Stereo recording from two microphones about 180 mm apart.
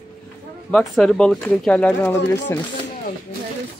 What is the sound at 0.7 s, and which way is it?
Speech, 5° left (ahead or behind).